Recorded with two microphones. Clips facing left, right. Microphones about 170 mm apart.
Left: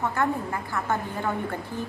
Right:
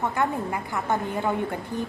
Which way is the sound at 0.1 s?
15° right (ahead or behind).